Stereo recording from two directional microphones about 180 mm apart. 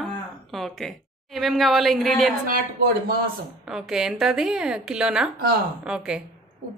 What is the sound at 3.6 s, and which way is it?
Speech, 5° right (ahead or behind).